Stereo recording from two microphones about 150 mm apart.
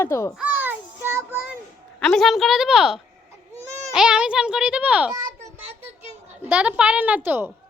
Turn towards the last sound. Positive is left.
turn(degrees=-15)  # may be behind; listen again after turning